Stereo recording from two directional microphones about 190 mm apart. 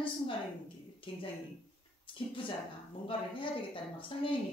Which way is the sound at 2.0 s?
25° left (ahead or behind).